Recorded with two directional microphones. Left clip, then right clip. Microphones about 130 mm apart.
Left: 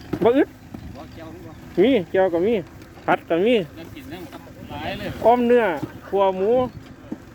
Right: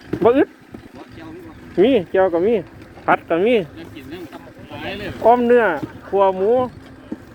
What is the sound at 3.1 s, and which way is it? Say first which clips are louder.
Speech: right 3 dB; 45° left (ahead or behind).